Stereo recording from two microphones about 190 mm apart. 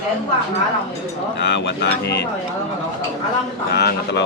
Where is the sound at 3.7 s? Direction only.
60° left (ahead or behind).